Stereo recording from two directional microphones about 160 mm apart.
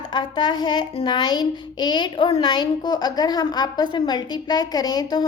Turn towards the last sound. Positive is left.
turn(degrees=25)  # may be behind; listen again after turning